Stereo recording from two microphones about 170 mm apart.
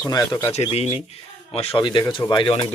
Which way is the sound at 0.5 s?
40° left (ahead or behind).